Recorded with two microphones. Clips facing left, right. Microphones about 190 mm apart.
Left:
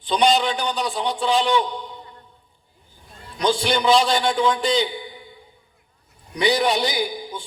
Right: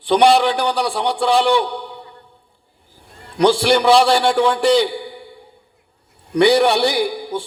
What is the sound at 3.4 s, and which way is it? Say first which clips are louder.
A man's voice: right 7 dB; 90° right.